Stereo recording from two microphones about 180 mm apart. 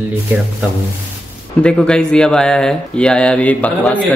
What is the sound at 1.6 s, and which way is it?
A man's voice, 5° left (ahead or behind).